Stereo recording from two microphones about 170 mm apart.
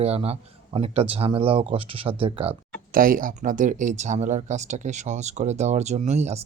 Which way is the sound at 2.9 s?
55° right (ahead or behind).